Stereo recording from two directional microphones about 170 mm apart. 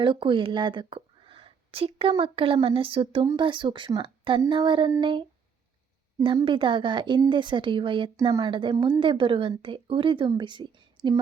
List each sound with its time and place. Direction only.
0.0 s speech: 30° right (ahead or behind)